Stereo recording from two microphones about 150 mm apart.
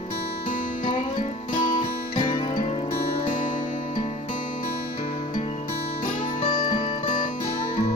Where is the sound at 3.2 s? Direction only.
60° left (ahead or behind); by 5.6 s 45° left (ahead or behind).